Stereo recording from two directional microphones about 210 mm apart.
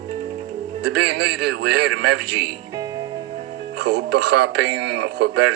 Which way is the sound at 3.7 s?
50° right (ahead or behind).